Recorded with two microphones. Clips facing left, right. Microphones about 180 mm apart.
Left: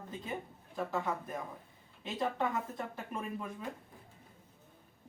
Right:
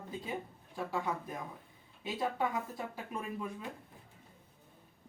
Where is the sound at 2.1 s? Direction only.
5° right (ahead or behind).